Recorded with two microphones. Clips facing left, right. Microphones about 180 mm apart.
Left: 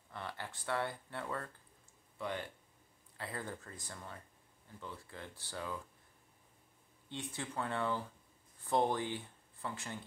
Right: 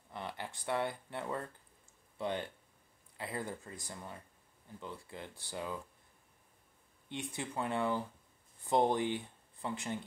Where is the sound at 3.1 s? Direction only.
15° right (ahead or behind).